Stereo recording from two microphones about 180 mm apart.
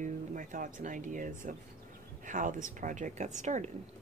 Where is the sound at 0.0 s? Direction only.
45° right (ahead or behind).